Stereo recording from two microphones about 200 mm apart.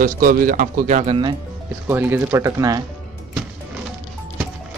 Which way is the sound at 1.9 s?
10° right (ahead or behind).